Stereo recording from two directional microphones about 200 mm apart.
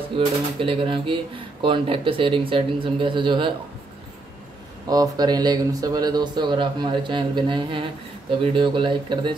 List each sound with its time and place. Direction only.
0.1 s speech: 25° right (ahead or behind)
4.8 s speech: 20° right (ahead or behind)